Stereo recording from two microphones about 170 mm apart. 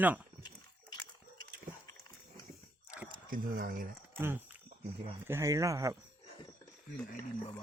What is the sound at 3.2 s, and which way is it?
Speech, 55° right (ahead or behind).